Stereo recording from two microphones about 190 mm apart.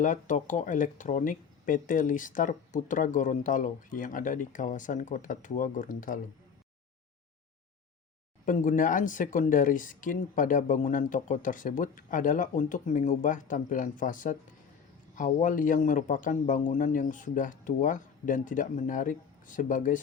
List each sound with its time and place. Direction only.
0.0 s speech: 40° left (ahead or behind)
8.4 s speech: 45° left (ahead or behind)